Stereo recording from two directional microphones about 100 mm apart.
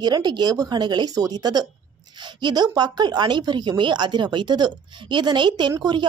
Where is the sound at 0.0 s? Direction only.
45° right (ahead or behind).